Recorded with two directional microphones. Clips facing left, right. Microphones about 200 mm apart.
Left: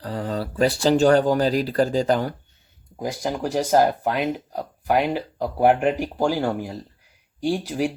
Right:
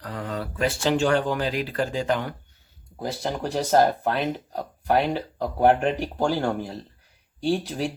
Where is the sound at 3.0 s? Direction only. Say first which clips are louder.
Left 2 dB; 10° left (ahead or behind).